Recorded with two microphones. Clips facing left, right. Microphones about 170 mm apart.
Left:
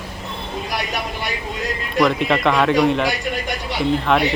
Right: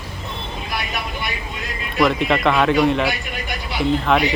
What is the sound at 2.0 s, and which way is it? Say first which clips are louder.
Speech: even; centre (ahead or behind).